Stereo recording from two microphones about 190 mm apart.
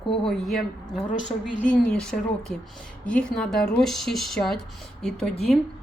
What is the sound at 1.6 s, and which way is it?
A woman's voice, 5° left (ahead or behind).